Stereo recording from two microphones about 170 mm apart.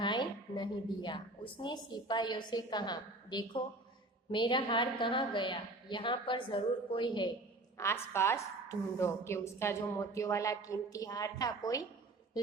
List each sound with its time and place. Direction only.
0.0 s a woman's voice: 25° left (ahead or behind)
7.8 s a woman's voice: 15° left (ahead or behind)